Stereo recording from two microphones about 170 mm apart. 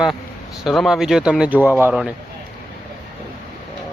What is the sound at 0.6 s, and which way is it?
Speech, centre (ahead or behind).